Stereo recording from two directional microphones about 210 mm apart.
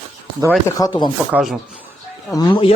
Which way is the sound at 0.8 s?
20° left (ahead or behind).